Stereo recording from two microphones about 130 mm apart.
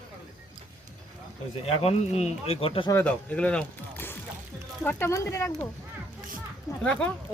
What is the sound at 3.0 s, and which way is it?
Speech, 10° left (ahead or behind).